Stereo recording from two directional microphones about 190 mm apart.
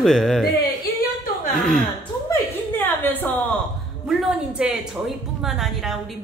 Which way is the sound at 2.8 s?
10° left (ahead or behind).